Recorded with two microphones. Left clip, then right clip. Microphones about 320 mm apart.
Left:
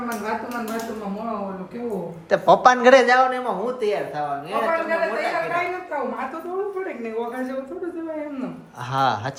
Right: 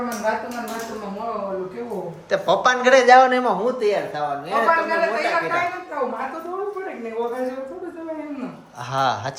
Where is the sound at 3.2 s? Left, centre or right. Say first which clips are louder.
Right 4 dB; right.